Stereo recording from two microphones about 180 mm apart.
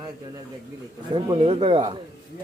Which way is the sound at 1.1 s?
30° right (ahead or behind).